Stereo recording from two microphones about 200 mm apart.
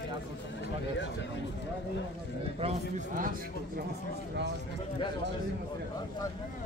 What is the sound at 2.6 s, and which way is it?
Speech, 35° right (ahead or behind).